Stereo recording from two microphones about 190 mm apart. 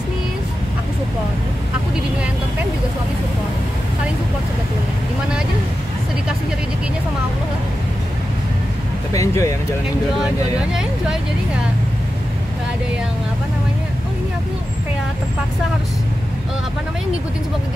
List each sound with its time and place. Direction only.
9.1 s speech: 15° left (ahead or behind)
10.7 s speech: 5° right (ahead or behind)